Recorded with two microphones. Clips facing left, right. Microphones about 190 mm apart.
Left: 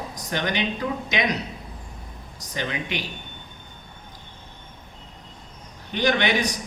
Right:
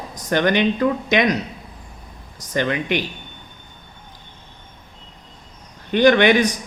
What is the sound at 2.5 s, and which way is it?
Speech, 55° right (ahead or behind).